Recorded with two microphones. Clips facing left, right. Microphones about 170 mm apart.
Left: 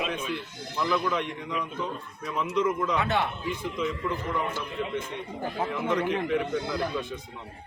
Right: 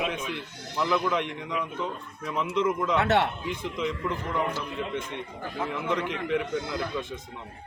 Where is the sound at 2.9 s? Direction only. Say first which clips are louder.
Right 3 dB; 75° right (ahead or behind).